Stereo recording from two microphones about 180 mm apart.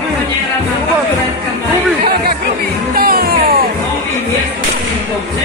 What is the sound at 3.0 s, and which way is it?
Music, 55° right (ahead or behind).